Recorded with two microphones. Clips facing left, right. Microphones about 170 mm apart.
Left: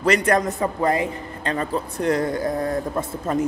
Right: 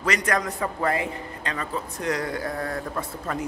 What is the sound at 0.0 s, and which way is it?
Speech, 30° left (ahead or behind).